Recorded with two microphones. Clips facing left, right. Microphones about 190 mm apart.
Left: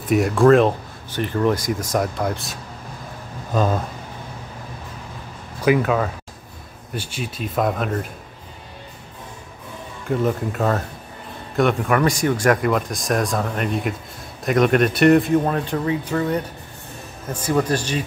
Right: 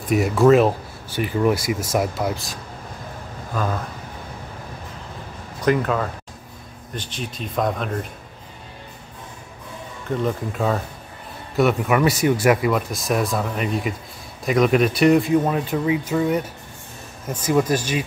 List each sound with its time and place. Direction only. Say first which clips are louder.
0.0 s speech: left 1 dB; centre (ahead or behind)
3.5 s speech: left 5 dB; 20° left (ahead or behind)
5.6 s speech: left 2 dB; 5° left (ahead or behind)
10.0 s speech: left 2 dB; 5° left (ahead or behind)